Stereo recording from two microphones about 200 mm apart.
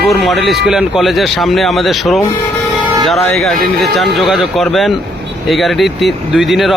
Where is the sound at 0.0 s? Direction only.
Centre (ahead or behind).